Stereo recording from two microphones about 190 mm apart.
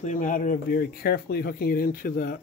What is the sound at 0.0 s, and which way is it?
Speech, 40° left (ahead or behind).